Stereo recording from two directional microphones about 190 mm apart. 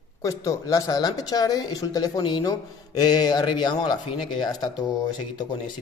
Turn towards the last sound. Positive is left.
turn(degrees=25)  # may be behind; listen again after turning